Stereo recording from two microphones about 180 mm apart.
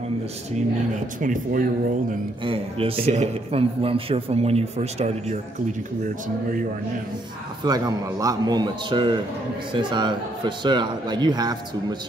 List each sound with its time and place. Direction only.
0.9 s speech: 45° right (ahead or behind)
2.4 s speech: 30° right (ahead or behind)
6.0 s speech: 50° right (ahead or behind)
7.6 s a man's voice: 20° right (ahead or behind)